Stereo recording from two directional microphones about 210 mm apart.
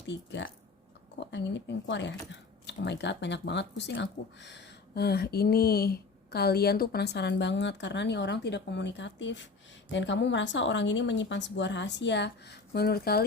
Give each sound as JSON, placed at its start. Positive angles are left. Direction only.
{"t": 0.0, "sound": "speech", "side_deg": 55}